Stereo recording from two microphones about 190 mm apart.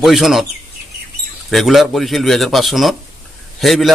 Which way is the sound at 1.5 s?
Centre (ahead or behind).